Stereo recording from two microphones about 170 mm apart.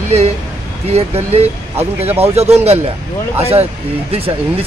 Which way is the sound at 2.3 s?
40° right (ahead or behind).